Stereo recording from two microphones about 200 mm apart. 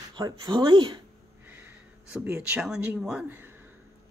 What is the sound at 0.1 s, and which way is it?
Speech, 25° right (ahead or behind).